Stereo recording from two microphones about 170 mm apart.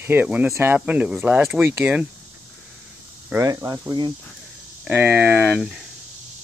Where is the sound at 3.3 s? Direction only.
20° right (ahead or behind).